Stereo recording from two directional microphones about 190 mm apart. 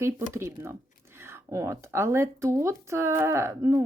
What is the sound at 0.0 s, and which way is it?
A woman's voice, 15° right (ahead or behind).